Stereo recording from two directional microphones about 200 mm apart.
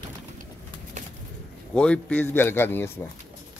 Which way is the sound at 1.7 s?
5° left (ahead or behind).